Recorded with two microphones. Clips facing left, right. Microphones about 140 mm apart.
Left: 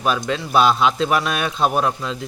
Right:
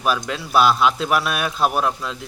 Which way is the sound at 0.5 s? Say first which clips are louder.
Even; 5° right (ahead or behind).